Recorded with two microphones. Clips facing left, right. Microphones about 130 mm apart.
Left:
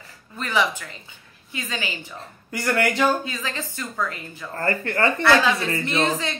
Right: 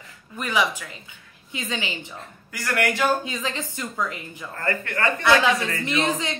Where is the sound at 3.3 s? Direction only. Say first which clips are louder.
Right 1 dB; 20° right (ahead or behind).